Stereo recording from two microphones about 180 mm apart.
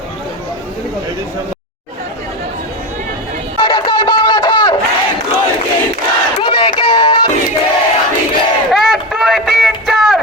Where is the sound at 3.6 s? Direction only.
25° left (ahead or behind).